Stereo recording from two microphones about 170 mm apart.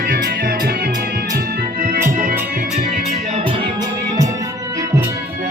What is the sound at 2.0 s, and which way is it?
Music, 50° right (ahead or behind).